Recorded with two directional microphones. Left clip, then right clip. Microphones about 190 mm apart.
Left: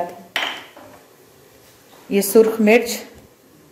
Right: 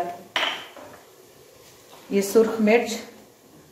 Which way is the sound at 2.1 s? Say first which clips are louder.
Left 5 dB; 40° left (ahead or behind).